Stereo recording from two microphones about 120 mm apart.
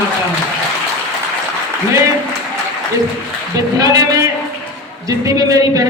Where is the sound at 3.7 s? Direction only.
30° right (ahead or behind).